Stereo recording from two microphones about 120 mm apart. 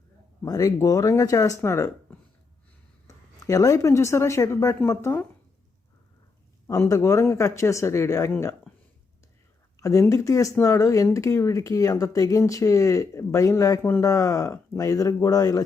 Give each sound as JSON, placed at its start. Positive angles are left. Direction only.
{"t": 0.4, "sound": "speech", "side_deg": 30}
{"t": 3.4, "sound": "speech", "side_deg": 30}
{"t": 6.7, "sound": "speech", "side_deg": 30}
{"t": 9.7, "sound": "speech", "side_deg": 25}